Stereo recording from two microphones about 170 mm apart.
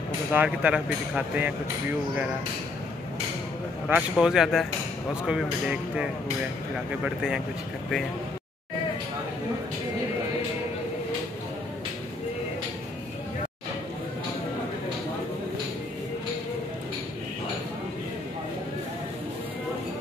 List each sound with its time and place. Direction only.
0.3 s speech: 10° right (ahead or behind)
3.9 s speech: 5° right (ahead or behind)